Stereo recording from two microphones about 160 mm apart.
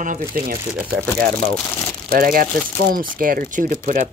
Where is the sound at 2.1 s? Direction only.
65° right (ahead or behind).